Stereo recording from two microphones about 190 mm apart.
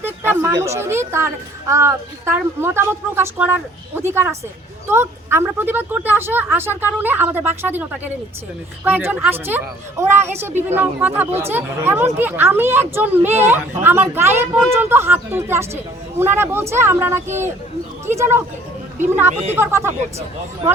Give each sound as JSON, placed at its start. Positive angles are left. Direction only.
{"t": 0.0, "sound": "a woman's voice", "side_deg": -10}
{"t": 19.3, "sound": "speech", "side_deg": -35}
{"t": 19.5, "sound": "a woman's voice", "side_deg": -15}